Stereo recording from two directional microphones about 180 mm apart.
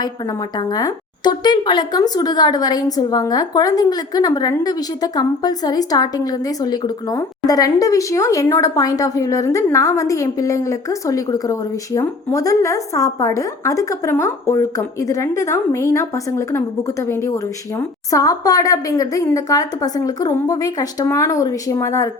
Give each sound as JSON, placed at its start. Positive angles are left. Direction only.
{"t": 0.5, "sound": "a woman's voice", "side_deg": 20}